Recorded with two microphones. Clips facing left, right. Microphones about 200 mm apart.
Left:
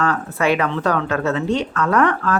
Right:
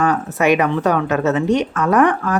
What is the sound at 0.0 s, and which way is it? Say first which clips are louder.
Speech: right 3 dB; 20° right (ahead or behind).